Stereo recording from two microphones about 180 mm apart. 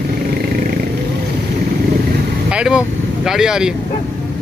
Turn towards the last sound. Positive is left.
turn(degrees=-5)  # may be behind; listen again after turning